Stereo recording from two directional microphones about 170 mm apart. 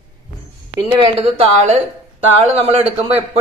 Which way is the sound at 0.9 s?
35° right (ahead or behind).